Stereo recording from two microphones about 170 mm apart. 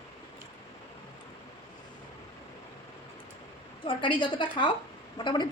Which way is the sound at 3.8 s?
30° left (ahead or behind).